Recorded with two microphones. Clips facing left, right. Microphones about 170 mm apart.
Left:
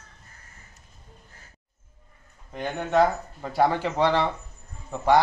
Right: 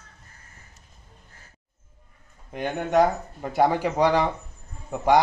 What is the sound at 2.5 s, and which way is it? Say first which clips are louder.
Speech: right 1 dB; 15° right (ahead or behind).